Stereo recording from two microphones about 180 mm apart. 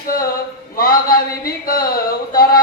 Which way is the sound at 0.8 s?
55° left (ahead or behind).